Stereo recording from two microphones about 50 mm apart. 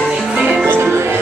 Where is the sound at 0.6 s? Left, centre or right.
Right.